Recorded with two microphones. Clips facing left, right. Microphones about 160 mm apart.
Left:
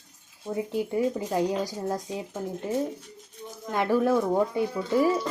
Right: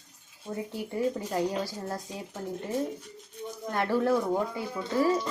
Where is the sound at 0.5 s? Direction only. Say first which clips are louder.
Left 6 dB; 15° left (ahead or behind).